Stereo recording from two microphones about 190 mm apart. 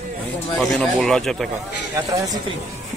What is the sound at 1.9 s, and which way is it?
Speech, 15° right (ahead or behind).